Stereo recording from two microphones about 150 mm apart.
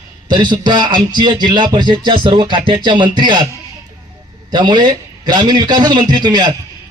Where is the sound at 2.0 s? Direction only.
35° right (ahead or behind).